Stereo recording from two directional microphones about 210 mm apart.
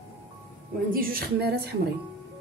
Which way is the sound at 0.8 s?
45° right (ahead or behind).